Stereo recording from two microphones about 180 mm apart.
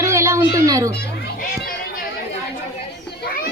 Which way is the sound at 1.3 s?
50° left (ahead or behind).